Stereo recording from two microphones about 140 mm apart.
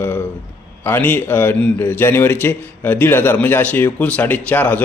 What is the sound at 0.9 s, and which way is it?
A man's voice, 15° left (ahead or behind).